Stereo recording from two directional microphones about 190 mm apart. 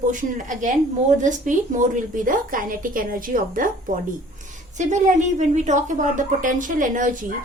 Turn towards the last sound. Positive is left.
turn(degrees=-45)  # may be behind; listen again after turning